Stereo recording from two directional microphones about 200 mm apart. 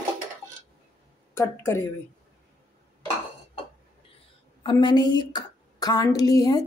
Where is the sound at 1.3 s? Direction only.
15° left (ahead or behind).